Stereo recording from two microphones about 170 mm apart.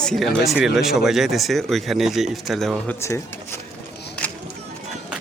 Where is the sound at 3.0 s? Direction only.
15° left (ahead or behind).